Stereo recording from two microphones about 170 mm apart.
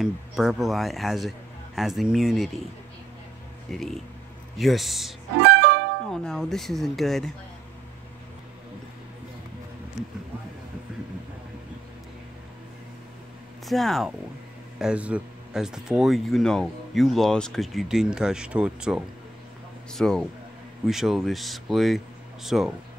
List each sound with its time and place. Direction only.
0.0 s speech: centre (ahead or behind)
3.7 s speech: centre (ahead or behind)
5.4 s music: 90° right
6.0 s speech: 5° left (ahead or behind)
13.7 s speech: centre (ahead or behind)